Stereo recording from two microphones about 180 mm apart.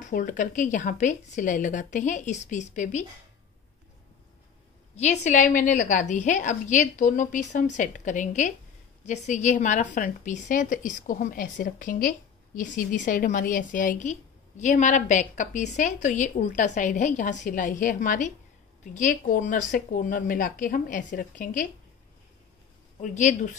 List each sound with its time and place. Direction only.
0.0 s a woman's voice: 45° left (ahead or behind)
5.2 s a woman's voice: 45° left (ahead or behind)
22.9 s a woman's voice: 45° left (ahead or behind)